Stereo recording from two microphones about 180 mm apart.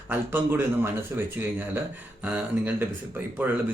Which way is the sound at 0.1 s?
10° right (ahead or behind).